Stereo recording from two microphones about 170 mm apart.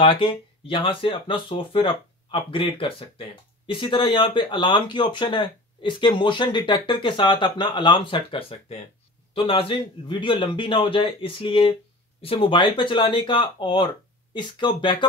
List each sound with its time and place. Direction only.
0.0 s speech: 30° left (ahead or behind)